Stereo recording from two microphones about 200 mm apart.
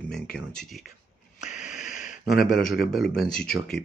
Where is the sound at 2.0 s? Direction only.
45° left (ahead or behind).